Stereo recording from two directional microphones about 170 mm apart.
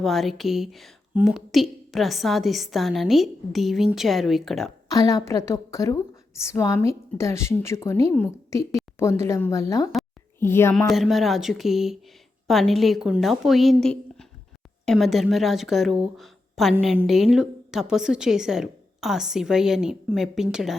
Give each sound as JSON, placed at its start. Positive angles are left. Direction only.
{"t": 0.0, "sound": "a woman's voice", "side_deg": 0}
{"t": 4.9, "sound": "a woman's voice", "side_deg": 20}
{"t": 10.8, "sound": "a woman's voice", "side_deg": 0}
{"t": 13.8, "sound": "a sound", "side_deg": 5}
{"t": 14.8, "sound": "a woman's voice", "side_deg": 0}